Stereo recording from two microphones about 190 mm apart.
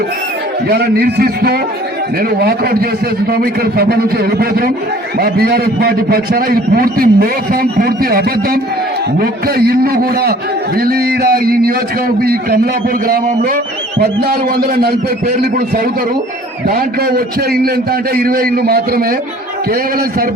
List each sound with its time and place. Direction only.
0.7 s a man's voice: 55° right (ahead or behind)
16.6 s a man's voice: 50° right (ahead or behind)